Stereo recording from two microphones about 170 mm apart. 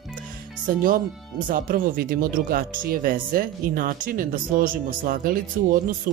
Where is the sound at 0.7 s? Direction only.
55° right (ahead or behind).